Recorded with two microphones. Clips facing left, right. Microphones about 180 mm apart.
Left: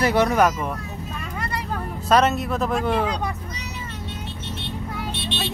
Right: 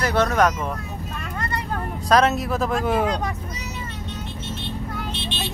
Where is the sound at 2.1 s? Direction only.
Centre (ahead or behind).